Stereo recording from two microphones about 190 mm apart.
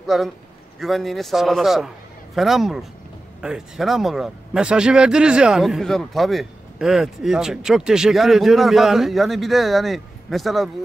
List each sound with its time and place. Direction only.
0.0 s a man's voice: centre (ahead or behind)